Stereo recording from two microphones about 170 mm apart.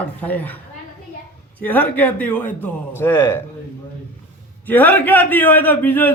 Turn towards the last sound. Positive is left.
turn(degrees=10)  # may be behind; listen again after turning